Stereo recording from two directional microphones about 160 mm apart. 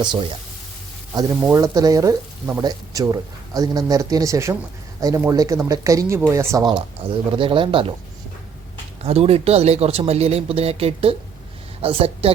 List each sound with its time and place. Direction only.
0.0 s speech: 30° right (ahead or behind)
1.5 s speech: 20° right (ahead or behind)
9.0 s speech: 40° right (ahead or behind)